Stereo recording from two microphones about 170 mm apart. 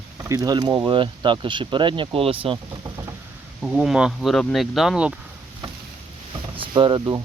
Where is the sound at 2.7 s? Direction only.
20° right (ahead or behind).